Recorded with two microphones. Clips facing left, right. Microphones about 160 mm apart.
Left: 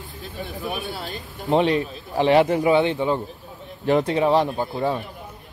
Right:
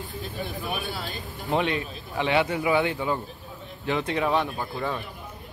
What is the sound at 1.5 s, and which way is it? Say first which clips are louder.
A man's voice: left 6 dB; 35° left (ahead or behind).